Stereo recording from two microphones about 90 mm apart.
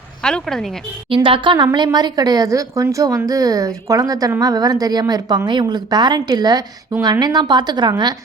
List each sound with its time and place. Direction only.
0.2 s speech: 5° left (ahead or behind)
1.1 s a woman's voice: 75° right (ahead or behind); by 8.1 s 50° right (ahead or behind)